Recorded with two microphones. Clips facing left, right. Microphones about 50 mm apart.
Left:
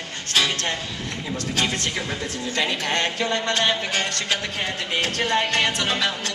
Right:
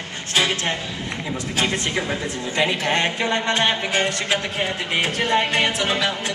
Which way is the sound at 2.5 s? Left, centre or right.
Centre.